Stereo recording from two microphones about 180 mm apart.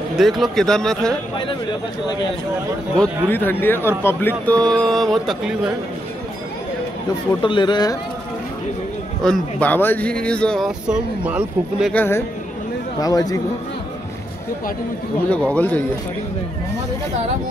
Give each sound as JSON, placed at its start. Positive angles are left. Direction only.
{"t": 0.1, "sound": "speech", "side_deg": 0}
{"t": 3.0, "sound": "speech", "side_deg": 10}
{"t": 7.4, "sound": "speech", "side_deg": 25}
{"t": 9.2, "sound": "speech", "side_deg": 5}
{"t": 11.9, "sound": "speech", "side_deg": 10}
{"t": 15.5, "sound": "speech", "side_deg": 10}